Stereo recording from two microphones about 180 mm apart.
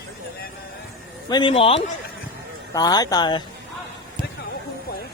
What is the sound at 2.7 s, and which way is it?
Speech, 20° left (ahead or behind).